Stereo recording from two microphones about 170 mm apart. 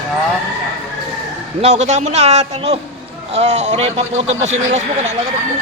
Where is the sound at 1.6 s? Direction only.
40° right (ahead or behind).